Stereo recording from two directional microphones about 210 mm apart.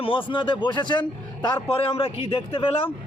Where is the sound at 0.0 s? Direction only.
25° left (ahead or behind).